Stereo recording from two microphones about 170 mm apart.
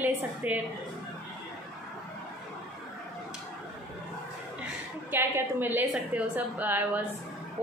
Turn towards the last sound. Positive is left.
turn(degrees=-10)  # may be behind; listen again after turning